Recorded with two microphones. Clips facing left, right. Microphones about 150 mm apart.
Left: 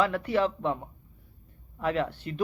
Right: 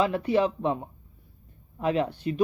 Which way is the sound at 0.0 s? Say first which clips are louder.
Right 2 dB; 20° right (ahead or behind).